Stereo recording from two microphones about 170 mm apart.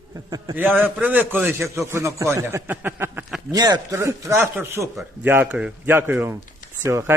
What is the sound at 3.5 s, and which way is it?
A man's voice, 20° right (ahead or behind).